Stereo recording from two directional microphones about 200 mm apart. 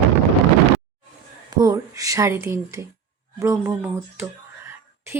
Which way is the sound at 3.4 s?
15° right (ahead or behind).